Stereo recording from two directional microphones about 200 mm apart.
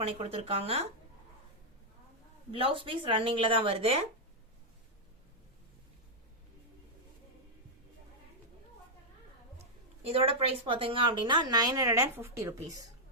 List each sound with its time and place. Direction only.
0.0 s a woman's voice: 30° right (ahead or behind)
2.5 s a woman's voice: 30° right (ahead or behind)
9.6 s a woman's voice: 30° right (ahead or behind); by 12.5 s 15° right (ahead or behind)